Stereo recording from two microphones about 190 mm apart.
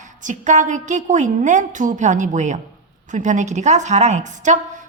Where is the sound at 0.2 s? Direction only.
40° right (ahead or behind).